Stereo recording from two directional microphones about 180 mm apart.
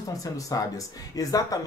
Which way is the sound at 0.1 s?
20° left (ahead or behind).